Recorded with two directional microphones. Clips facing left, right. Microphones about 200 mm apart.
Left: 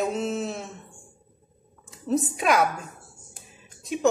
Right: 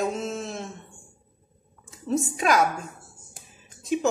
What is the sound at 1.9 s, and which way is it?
Speech, centre (ahead or behind).